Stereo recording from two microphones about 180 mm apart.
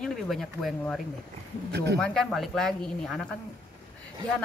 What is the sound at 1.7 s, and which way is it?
Speech, 70° right (ahead or behind).